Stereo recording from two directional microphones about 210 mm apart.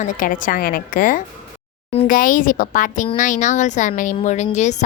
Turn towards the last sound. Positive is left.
turn(degrees=35)  # may be behind; listen again after turning